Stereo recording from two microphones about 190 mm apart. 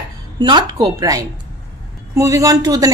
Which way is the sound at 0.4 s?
25° right (ahead or behind).